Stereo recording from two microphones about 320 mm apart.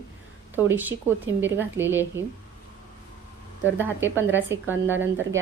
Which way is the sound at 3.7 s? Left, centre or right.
Centre.